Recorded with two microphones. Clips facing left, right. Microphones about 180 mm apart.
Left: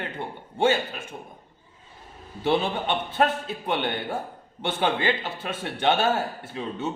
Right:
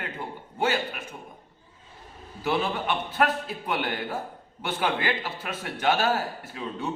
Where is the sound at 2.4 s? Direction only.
25° left (ahead or behind).